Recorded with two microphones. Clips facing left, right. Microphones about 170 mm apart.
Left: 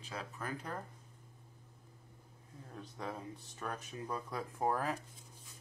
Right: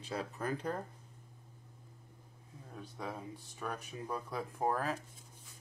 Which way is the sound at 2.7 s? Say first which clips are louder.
Right 1 dB; 5° right (ahead or behind).